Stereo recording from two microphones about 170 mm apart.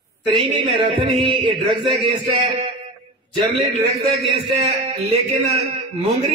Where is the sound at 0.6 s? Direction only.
30° right (ahead or behind).